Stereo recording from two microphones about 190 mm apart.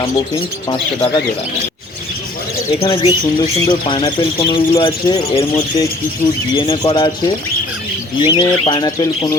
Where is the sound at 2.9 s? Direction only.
25° left (ahead or behind).